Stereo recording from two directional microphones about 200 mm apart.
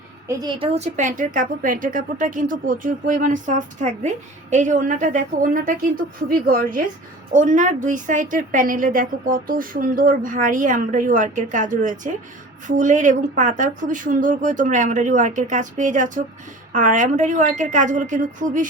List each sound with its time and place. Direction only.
0.3 s a woman's voice: 25° right (ahead or behind); by 18.7 s 40° right (ahead or behind)